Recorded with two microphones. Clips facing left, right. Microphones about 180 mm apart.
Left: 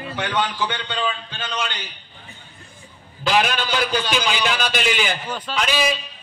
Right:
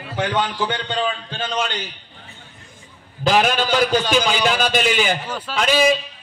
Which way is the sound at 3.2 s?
45° right (ahead or behind).